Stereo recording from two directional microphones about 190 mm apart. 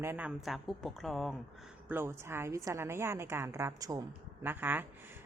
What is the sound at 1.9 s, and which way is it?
A woman's voice, 10° right (ahead or behind).